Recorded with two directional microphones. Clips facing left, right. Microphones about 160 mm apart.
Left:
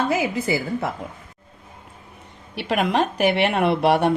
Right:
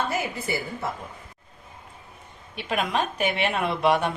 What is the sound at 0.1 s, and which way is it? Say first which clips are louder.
Speech: left 6 dB; 90° left.